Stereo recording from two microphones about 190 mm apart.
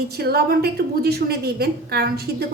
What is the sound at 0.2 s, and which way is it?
A woman's voice, 55° right (ahead or behind).